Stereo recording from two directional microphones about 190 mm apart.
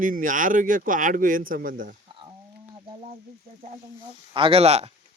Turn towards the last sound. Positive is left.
turn(degrees=-35)  # may be behind; listen again after turning